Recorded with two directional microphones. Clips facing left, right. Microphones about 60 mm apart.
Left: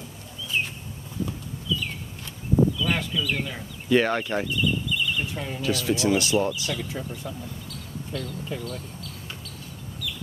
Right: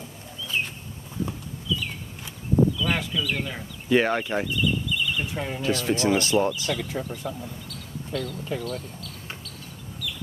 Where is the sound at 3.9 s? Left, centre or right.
Centre.